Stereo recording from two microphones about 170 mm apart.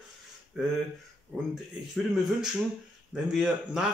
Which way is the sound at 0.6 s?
5° right (ahead or behind).